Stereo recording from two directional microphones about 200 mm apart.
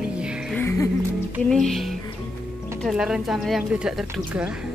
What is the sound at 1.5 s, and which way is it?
Speech, centre (ahead or behind).